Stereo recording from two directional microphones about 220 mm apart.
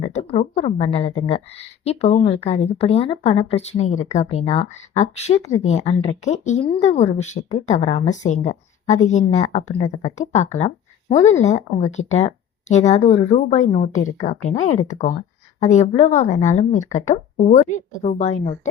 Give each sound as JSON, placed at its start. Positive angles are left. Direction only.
{"t": 0.1, "sound": "a woman's voice", "side_deg": 30}